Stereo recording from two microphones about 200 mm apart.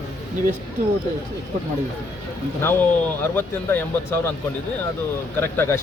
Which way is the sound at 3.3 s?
10° left (ahead or behind).